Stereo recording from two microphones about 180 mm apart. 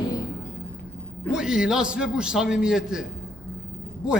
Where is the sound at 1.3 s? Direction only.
5° right (ahead or behind).